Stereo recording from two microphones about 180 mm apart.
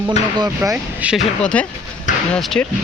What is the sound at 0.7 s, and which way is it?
Speech, 5° right (ahead or behind).